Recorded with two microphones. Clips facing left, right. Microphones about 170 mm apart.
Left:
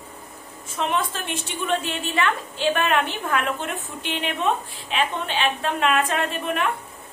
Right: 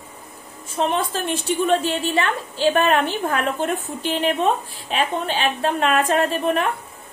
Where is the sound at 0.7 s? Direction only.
35° right (ahead or behind).